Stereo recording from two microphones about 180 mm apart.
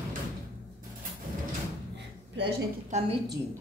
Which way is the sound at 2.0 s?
75° right (ahead or behind).